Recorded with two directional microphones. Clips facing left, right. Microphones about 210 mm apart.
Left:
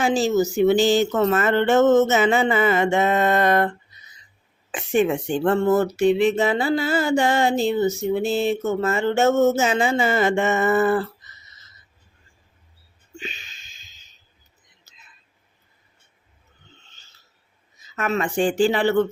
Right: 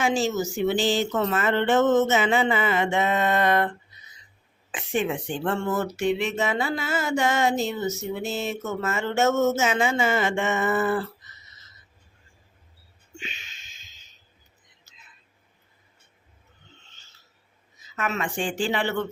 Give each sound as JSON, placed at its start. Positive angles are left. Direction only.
{"t": 0.0, "sound": "speech", "side_deg": 35}
{"t": 4.7, "sound": "speech", "side_deg": 45}
{"t": 13.1, "sound": "music", "side_deg": 35}
{"t": 14.9, "sound": "whispering", "side_deg": 40}
{"t": 17.9, "sound": "speech", "side_deg": 40}